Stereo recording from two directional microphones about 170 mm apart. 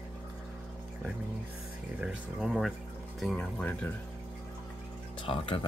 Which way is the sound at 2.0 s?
5° right (ahead or behind).